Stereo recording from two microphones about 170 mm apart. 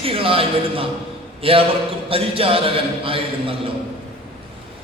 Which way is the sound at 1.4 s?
35° right (ahead or behind).